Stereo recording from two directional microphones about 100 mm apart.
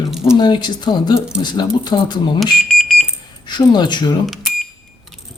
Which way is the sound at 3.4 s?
50° left (ahead or behind).